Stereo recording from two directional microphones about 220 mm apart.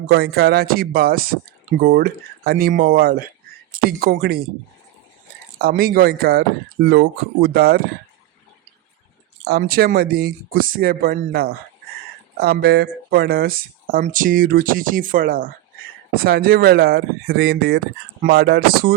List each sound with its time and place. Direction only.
0.1 s speech: 45° right (ahead or behind)
5.5 s speech: 45° right (ahead or behind)
9.5 s speech: 40° right (ahead or behind)